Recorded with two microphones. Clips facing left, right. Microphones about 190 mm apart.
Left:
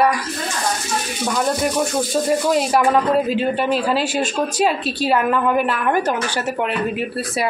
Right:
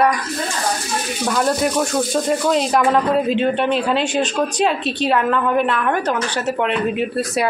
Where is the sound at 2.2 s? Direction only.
5° left (ahead or behind).